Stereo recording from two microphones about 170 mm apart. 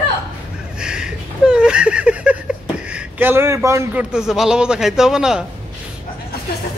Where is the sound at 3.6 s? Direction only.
15° right (ahead or behind).